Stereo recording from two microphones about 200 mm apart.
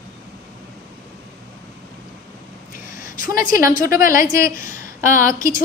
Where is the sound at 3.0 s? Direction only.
45° left (ahead or behind).